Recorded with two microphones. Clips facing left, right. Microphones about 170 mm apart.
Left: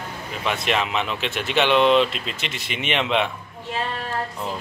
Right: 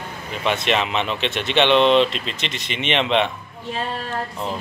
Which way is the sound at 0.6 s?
Centre (ahead or behind).